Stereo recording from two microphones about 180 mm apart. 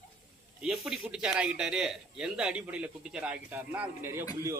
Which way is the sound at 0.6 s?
5° right (ahead or behind).